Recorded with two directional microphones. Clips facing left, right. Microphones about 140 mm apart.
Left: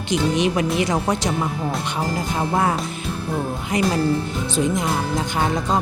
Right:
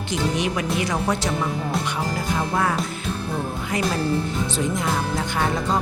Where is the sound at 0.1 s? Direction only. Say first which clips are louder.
Left 4 dB; 20° left (ahead or behind).